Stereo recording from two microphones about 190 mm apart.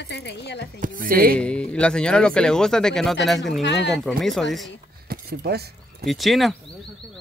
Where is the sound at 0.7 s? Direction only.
45° right (ahead or behind).